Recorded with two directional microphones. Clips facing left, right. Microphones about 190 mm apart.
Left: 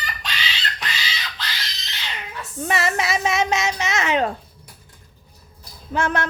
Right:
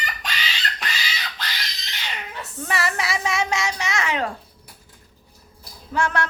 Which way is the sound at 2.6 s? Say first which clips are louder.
Left 3 dB; 20° left (ahead or behind).